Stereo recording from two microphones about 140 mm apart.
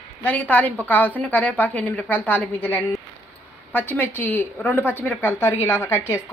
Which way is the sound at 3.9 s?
15° left (ahead or behind).